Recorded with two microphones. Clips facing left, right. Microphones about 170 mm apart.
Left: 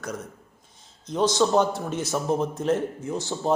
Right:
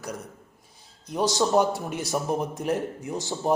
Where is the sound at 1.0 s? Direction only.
10° right (ahead or behind).